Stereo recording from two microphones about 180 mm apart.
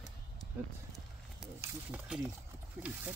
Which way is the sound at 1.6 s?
10° right (ahead or behind).